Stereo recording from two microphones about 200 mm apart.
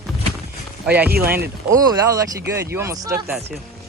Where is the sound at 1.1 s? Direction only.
50° right (ahead or behind).